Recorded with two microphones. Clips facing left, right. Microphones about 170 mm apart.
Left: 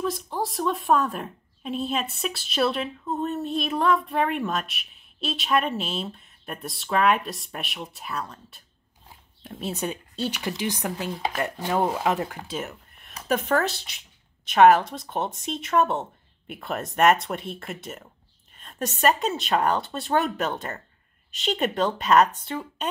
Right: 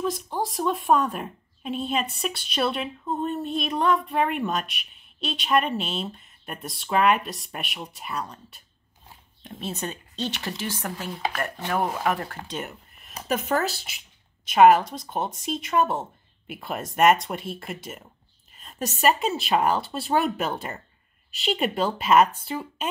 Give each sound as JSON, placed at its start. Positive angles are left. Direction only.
{"t": 0.0, "sound": "a woman's voice", "side_deg": 0}
{"t": 9.6, "sound": "speech", "side_deg": 10}
{"t": 12.4, "sound": "a sound", "side_deg": 0}
{"t": 13.3, "sound": "a woman's voice", "side_deg": 0}